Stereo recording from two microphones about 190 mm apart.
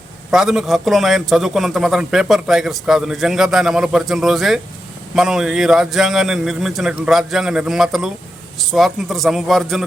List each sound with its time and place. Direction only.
0.3 s a man's voice: centre (ahead or behind)